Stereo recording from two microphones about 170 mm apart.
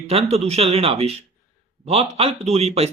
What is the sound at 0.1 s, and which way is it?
Speech, 35° right (ahead or behind).